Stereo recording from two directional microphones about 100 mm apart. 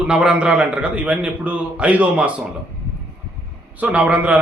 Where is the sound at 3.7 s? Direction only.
15° right (ahead or behind).